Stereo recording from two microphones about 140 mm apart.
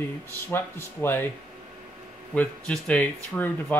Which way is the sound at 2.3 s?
10° left (ahead or behind).